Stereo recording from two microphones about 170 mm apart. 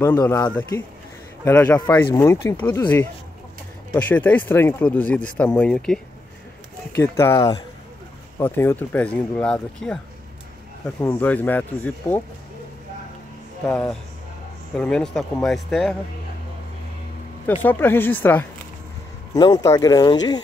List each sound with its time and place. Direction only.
0.0 s speech: 15° left (ahead or behind)
7.0 s speech: 15° left (ahead or behind)
11.0 s speech: 10° left (ahead or behind)
13.7 s speech: 5° left (ahead or behind)
17.5 s speech: 10° left (ahead or behind)
19.3 s speech: 20° left (ahead or behind)